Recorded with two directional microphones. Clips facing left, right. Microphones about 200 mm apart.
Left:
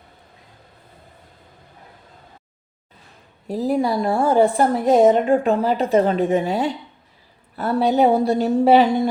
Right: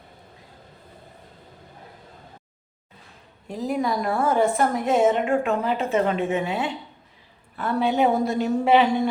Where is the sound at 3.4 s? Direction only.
35° left (ahead or behind).